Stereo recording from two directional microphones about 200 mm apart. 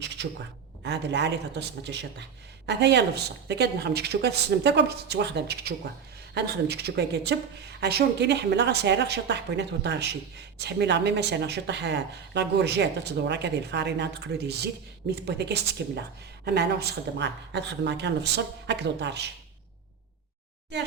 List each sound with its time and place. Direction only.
0.8 s speech: 60° right (ahead or behind)